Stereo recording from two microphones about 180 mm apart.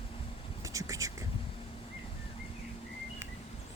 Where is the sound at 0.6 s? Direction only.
20° right (ahead or behind).